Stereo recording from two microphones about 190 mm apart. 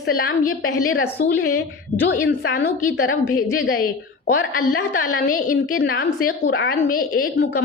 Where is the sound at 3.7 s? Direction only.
50° left (ahead or behind).